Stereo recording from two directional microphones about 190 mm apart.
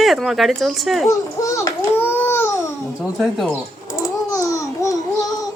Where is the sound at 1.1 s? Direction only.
15° left (ahead or behind).